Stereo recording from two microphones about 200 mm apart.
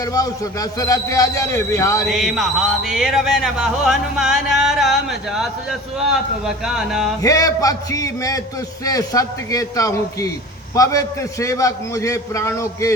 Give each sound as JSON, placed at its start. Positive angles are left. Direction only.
{"t": 0.0, "sound": "a man's voice", "side_deg": 15}
{"t": 2.0, "sound": "music", "side_deg": 0}
{"t": 7.2, "sound": "a man's voice", "side_deg": 15}